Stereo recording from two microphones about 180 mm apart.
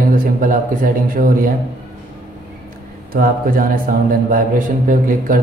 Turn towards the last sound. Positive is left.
turn(degrees=-50)  # may be behind; listen again after turning